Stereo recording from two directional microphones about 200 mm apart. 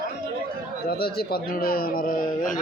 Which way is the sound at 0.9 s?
50° left (ahead or behind).